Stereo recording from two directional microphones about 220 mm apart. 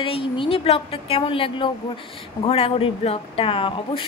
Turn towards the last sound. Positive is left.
turn(degrees=25)  # may be behind; listen again after turning